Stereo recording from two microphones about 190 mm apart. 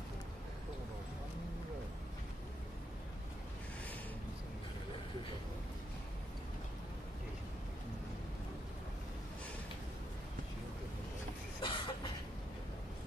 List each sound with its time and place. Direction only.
11.6 s cough: 25° left (ahead or behind)